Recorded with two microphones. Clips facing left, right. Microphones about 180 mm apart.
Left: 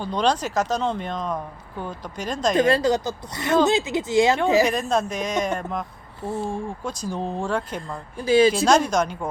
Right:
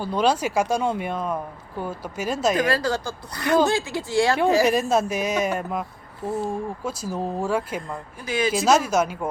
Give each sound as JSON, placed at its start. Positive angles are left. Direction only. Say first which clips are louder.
{"t": 0.0, "sound": "speech", "louder": "right 1 dB", "side_deg": -5}
{"t": 2.6, "sound": "speech", "louder": "left 4 dB", "side_deg": 25}
{"t": 4.7, "sound": "speech", "louder": "right 2 dB", "side_deg": -5}
{"t": 7.8, "sound": "speech", "louder": "left 1 dB", "side_deg": 30}
{"t": 8.5, "sound": "speech", "louder": "even", "side_deg": -5}